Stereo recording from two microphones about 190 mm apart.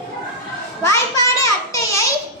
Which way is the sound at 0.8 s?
15° left (ahead or behind).